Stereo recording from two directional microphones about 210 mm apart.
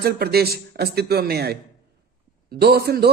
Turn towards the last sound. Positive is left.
turn(degrees=-50)  # may be behind; listen again after turning